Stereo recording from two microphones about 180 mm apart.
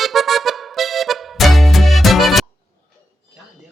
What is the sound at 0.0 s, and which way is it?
Music, centre (ahead or behind).